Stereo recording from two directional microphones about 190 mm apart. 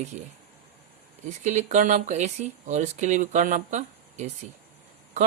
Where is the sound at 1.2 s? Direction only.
40° right (ahead or behind).